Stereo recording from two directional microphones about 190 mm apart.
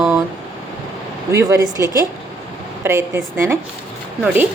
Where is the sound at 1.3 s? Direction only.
15° right (ahead or behind).